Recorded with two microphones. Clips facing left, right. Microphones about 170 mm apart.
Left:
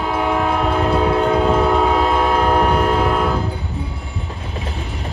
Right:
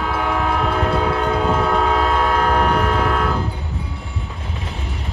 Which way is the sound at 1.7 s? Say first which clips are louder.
Left 2 dB; 15° left (ahead or behind).